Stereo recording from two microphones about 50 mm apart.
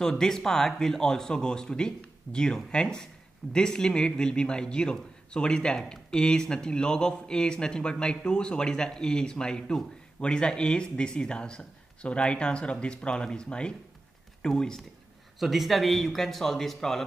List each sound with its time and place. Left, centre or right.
0.2 s speech: centre
15.3 s speech: centre